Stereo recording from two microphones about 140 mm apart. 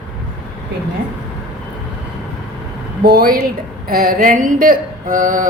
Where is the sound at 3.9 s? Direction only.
90° right.